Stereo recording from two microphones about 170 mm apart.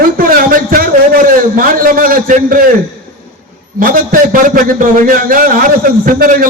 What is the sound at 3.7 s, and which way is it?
A man's voice, 55° right (ahead or behind).